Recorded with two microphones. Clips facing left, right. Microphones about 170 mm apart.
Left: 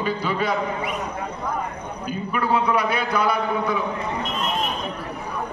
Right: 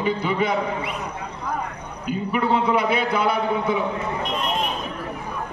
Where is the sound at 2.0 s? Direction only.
20° right (ahead or behind).